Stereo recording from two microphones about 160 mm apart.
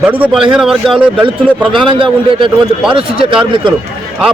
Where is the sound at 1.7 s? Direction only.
30° right (ahead or behind).